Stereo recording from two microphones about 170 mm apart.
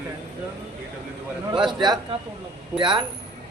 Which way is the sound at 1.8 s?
25° right (ahead or behind).